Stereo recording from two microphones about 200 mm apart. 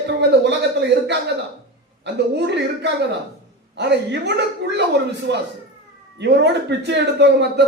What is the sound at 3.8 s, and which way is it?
A man's voice, 60° right (ahead or behind).